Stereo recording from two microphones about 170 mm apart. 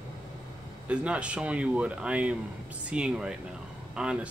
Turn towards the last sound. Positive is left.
turn(degrees=-5)  # may be behind; listen again after turning